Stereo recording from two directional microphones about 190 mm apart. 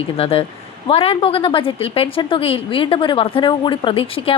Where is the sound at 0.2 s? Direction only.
30° left (ahead or behind).